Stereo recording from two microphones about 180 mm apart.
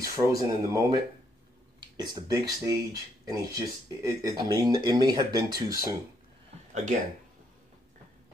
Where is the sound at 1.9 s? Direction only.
20° right (ahead or behind).